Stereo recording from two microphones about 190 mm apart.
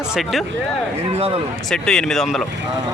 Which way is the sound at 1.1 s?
30° right (ahead or behind).